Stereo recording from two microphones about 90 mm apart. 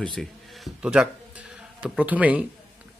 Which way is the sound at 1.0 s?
10° right (ahead or behind).